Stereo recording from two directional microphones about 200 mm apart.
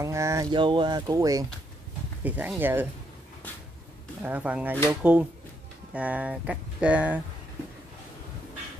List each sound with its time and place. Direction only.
0.0 s speech: 15° right (ahead or behind)
4.2 s speech: 5° right (ahead or behind)